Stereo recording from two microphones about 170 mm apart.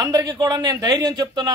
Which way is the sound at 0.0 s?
20° right (ahead or behind).